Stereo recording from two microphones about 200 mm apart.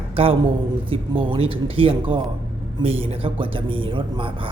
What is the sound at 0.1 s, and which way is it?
A man's voice, 30° right (ahead or behind).